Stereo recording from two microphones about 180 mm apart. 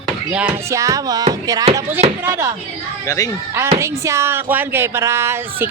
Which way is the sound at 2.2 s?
15° right (ahead or behind).